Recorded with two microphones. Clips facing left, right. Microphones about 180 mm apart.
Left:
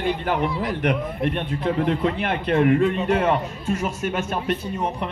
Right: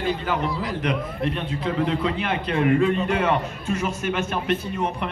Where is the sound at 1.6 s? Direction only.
50° left (ahead or behind).